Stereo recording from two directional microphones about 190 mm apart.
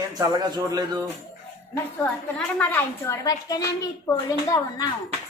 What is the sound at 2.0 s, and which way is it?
A woman's voice, 10° left (ahead or behind).